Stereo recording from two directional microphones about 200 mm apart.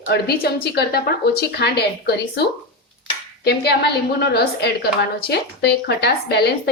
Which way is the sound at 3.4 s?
55° left (ahead or behind).